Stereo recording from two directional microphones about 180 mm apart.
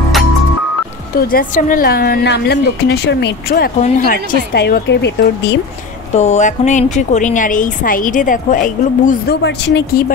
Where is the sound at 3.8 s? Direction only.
50° left (ahead or behind).